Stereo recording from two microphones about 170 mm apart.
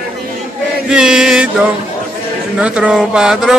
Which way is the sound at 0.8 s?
5° right (ahead or behind).